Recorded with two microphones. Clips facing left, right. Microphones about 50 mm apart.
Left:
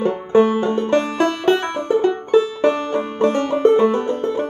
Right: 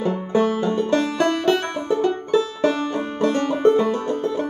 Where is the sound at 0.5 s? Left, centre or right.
Left.